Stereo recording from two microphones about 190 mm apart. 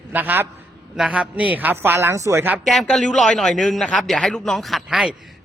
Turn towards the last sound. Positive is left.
turn(degrees=-5)  # may be behind; listen again after turning